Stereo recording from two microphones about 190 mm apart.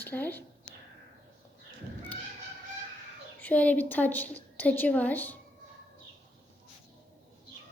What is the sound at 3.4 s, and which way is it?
A woman's voice, 5° left (ahead or behind).